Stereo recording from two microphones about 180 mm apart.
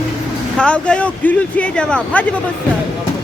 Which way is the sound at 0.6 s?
5° left (ahead or behind).